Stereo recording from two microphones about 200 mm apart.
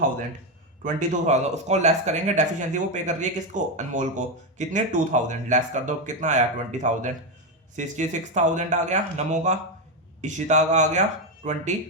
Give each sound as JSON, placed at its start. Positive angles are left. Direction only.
{"t": 0.9, "sound": "speech", "side_deg": -35}